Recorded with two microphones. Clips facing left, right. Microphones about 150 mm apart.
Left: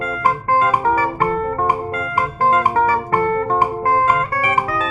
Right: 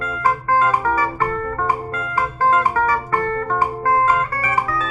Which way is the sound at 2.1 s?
15° left (ahead or behind).